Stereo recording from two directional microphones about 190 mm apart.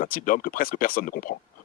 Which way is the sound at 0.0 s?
50° left (ahead or behind).